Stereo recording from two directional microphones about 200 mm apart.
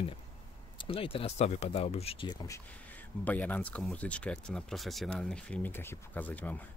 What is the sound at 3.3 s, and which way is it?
Speech, 5° left (ahead or behind).